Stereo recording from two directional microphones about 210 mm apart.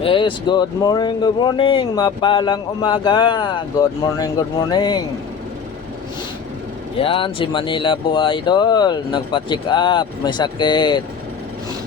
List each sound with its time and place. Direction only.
0.0 s speech: 25° left (ahead or behind)
7.0 s speech: 25° left (ahead or behind)